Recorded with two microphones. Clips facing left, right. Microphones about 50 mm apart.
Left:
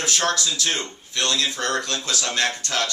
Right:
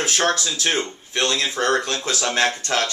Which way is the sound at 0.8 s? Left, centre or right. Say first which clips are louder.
Right 3 dB; centre.